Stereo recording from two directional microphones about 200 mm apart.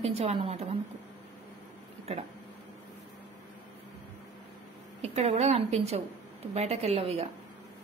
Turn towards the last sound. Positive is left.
turn(degrees=-30)  # may be behind; listen again after turning